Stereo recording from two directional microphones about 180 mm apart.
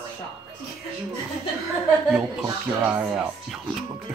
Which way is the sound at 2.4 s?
10° right (ahead or behind).